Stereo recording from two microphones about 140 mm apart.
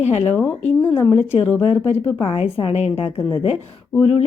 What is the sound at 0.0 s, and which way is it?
Speech, 45° left (ahead or behind).